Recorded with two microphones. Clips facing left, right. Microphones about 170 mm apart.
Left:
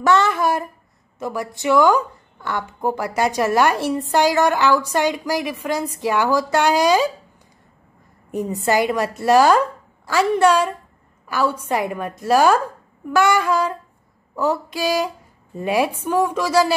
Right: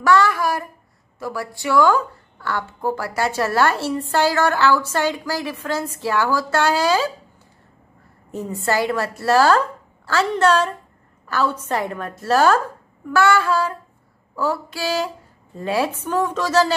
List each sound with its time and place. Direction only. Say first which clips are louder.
0.0 s a woman's voice: even; 20° left (ahead or behind)
8.3 s a woman's voice: left 3 dB; 15° left (ahead or behind)